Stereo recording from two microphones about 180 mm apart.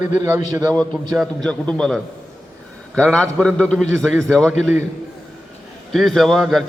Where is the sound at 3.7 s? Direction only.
5° right (ahead or behind).